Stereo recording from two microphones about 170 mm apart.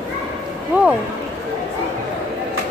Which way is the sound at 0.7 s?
10° right (ahead or behind).